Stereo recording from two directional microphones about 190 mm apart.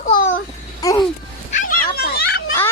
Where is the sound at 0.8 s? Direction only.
20° left (ahead or behind).